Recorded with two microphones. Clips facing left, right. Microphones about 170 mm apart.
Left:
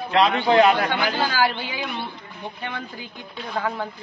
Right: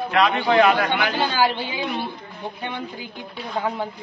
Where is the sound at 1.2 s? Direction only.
20° right (ahead or behind).